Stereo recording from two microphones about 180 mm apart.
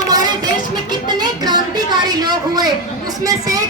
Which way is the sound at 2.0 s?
20° right (ahead or behind).